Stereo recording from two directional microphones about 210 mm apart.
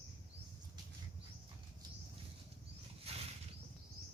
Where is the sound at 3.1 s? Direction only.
30° right (ahead or behind).